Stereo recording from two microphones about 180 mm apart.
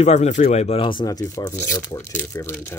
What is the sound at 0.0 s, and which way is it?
Speech, 40° left (ahead or behind).